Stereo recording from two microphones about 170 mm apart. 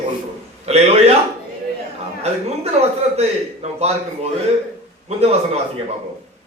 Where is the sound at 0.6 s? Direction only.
40° right (ahead or behind).